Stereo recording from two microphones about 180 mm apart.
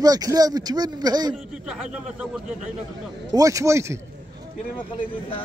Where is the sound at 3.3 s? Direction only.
20° right (ahead or behind).